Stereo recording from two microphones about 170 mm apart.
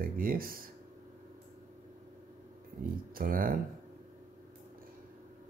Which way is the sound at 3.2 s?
55° right (ahead or behind).